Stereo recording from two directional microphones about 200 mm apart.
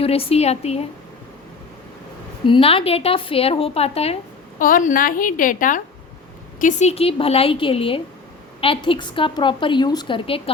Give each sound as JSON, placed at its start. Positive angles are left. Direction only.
{"t": 0.0, "sound": "a woman's voice", "side_deg": 30}
{"t": 2.5, "sound": "a woman's voice", "side_deg": 25}
{"t": 4.6, "sound": "a woman's voice", "side_deg": 40}